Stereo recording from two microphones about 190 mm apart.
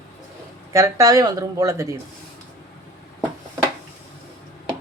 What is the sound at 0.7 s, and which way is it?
Speech, 15° right (ahead or behind).